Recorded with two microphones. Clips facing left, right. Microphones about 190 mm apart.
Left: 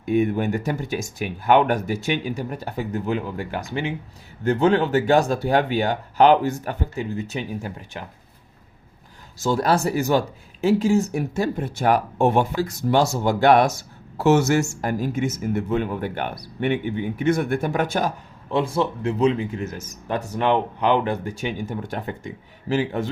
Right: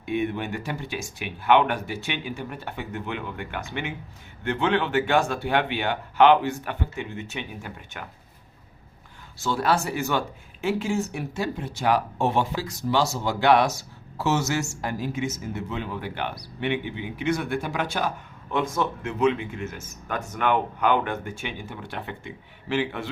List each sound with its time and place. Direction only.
0.0 s speech: 40° left (ahead or behind)
9.4 s speech: 40° left (ahead or behind)
18.5 s speech: 30° left (ahead or behind)